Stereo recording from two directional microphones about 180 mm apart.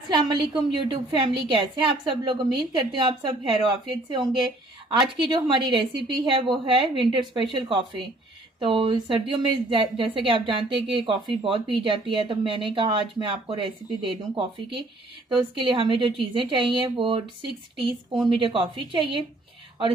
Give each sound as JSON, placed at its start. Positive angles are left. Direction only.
{"t": 0.2, "sound": "a woman's voice", "side_deg": -25}
{"t": 18.3, "sound": "a woman's voice", "side_deg": -30}